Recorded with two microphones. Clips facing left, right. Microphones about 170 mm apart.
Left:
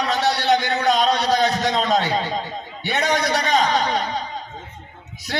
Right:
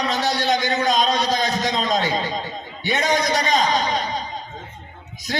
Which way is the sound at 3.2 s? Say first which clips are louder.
Even; 65° left (ahead or behind).